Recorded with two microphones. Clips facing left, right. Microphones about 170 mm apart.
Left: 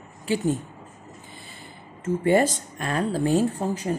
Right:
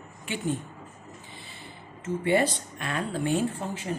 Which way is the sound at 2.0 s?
45° left (ahead or behind).